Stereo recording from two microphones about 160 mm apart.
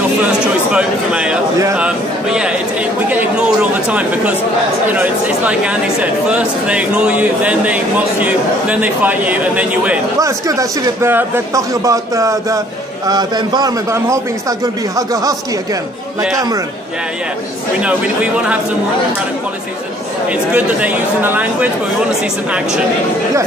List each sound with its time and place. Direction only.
0.7 s speech: 5° right (ahead or behind)
10.1 s speech: 20° right (ahead or behind)
16.3 s speech: 20° right (ahead or behind)
17.7 s speech: 10° right (ahead or behind)
20.2 s speech: 10° right (ahead or behind)